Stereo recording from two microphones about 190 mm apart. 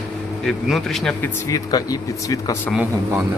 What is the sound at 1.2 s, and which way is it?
Speech, 20° left (ahead or behind).